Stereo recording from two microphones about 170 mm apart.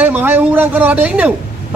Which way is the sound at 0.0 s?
10° right (ahead or behind).